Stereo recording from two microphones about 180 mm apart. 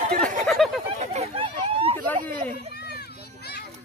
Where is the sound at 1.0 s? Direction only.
35° right (ahead or behind).